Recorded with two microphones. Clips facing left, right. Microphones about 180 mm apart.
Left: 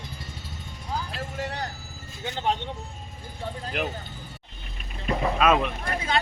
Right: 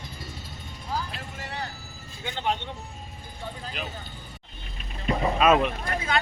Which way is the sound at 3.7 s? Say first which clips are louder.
Left 9 dB; 65° left (ahead or behind).